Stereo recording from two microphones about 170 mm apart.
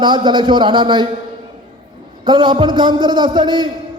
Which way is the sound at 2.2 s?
25° right (ahead or behind).